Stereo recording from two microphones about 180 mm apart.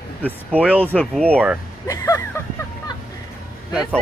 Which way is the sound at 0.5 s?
5° right (ahead or behind).